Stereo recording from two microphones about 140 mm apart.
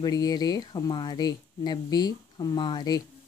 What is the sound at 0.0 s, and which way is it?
Speech, 25° left (ahead or behind).